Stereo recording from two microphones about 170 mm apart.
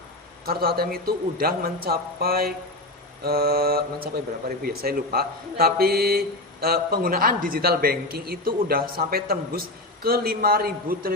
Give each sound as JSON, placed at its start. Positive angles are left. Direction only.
{"t": 0.4, "sound": "speech", "side_deg": -60}